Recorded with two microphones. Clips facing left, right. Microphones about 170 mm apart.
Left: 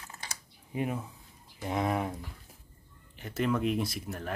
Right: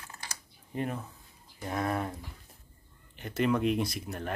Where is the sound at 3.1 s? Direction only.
Centre (ahead or behind).